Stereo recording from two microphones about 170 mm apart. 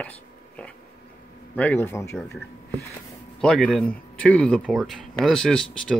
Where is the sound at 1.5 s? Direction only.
10° left (ahead or behind).